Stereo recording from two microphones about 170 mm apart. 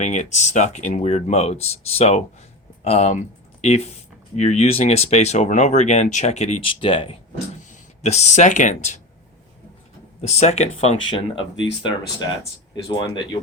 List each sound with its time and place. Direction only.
0.0 s speech: 45° left (ahead or behind)
7.7 s speech: 40° left (ahead or behind)
10.2 s speech: 40° left (ahead or behind)
11.1 s speech: 30° left (ahead or behind)